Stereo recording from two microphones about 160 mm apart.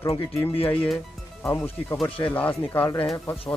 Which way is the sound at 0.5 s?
35° left (ahead or behind).